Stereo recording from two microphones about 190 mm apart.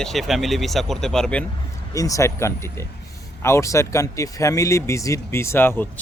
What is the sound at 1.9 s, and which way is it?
Speech, 15° left (ahead or behind).